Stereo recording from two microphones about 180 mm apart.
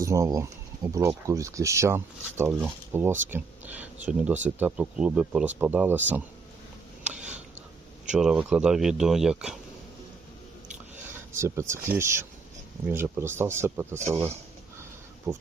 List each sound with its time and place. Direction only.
0.0 s speech: 15° right (ahead or behind)
8.1 s speech: 5° right (ahead or behind)
11.3 s speech: 15° right (ahead or behind)